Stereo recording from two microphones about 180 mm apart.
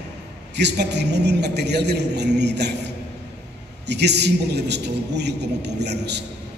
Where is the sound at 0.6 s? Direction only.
70° right (ahead or behind).